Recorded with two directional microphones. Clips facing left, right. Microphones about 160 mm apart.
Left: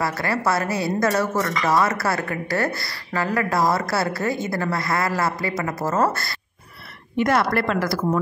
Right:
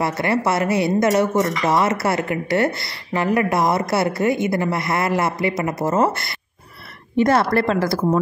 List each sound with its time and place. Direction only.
0.0 s a woman's voice: 25° right (ahead or behind)